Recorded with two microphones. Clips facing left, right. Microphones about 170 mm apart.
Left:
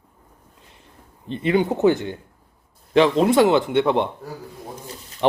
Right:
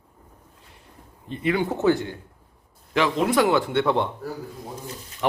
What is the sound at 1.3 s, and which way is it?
A man's voice, 25° left (ahead or behind).